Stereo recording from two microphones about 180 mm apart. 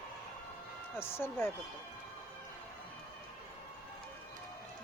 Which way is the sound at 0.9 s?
15° left (ahead or behind).